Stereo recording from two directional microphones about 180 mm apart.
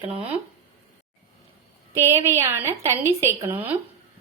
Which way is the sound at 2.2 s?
15° right (ahead or behind).